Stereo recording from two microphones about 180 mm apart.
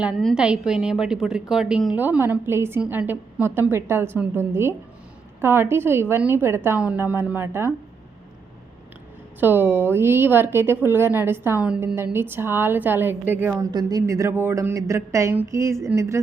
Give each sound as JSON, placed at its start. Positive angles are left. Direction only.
{"t": 0.0, "sound": "a woman's voice", "side_deg": 0}
{"t": 9.4, "sound": "a woman's voice", "side_deg": -10}
{"t": 13.7, "sound": "a woman's voice", "side_deg": -20}